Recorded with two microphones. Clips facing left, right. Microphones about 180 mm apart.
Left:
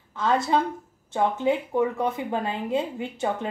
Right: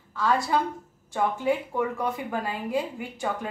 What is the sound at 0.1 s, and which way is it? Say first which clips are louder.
A woman's voice: left 2 dB; 20° left (ahead or behind).